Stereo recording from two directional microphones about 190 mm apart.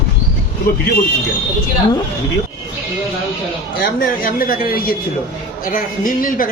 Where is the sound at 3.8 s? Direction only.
50° left (ahead or behind).